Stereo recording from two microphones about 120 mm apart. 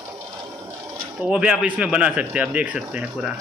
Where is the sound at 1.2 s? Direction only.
10° right (ahead or behind).